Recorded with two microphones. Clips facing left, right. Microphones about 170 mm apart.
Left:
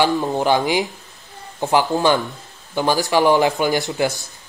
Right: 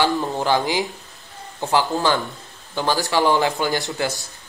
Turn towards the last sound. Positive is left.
turn(degrees=20)  # may be behind; listen again after turning